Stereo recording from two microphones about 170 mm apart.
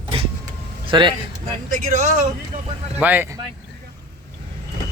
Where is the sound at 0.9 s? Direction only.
30° right (ahead or behind).